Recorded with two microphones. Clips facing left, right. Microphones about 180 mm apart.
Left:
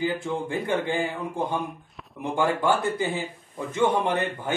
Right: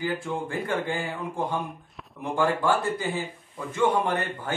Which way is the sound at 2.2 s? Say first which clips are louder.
Left 1 dB; 20° left (ahead or behind).